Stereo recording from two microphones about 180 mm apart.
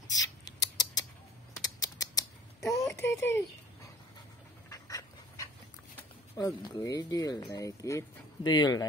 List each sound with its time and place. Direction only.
0.2 s creak: 20° left (ahead or behind)
1.6 s typing: 20° left (ahead or behind)
2.9 s a sound: 15° left (ahead or behind)
4.6 s dog: 20° left (ahead or behind)
6.3 s speech: 20° left (ahead or behind)